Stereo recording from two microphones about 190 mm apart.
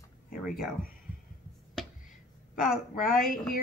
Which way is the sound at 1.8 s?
Centre (ahead or behind).